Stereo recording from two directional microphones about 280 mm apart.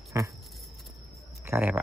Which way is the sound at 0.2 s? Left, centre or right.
Centre.